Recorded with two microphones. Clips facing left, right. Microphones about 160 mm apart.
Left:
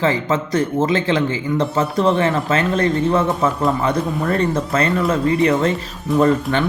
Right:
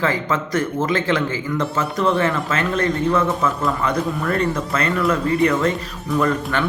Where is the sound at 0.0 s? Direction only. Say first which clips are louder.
Left 3 dB; 25° left (ahead or behind).